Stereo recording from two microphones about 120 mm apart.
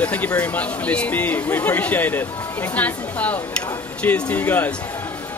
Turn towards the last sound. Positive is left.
turn(degrees=15)  # may be behind; listen again after turning